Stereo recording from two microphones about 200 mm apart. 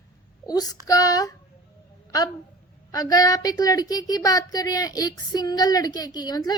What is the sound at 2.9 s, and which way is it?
Speech, 20° left (ahead or behind).